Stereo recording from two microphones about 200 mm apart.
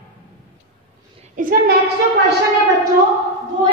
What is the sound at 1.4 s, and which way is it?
Speech, 45° right (ahead or behind).